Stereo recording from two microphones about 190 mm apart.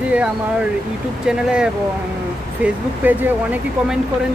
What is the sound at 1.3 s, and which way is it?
Speech, 5° right (ahead or behind).